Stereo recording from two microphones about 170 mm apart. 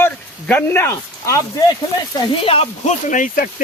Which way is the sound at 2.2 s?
35° left (ahead or behind).